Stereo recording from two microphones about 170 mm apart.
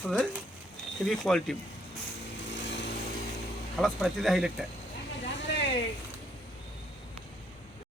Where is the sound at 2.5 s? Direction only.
90° left.